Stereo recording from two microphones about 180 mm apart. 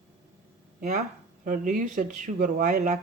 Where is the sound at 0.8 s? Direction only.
40° right (ahead or behind).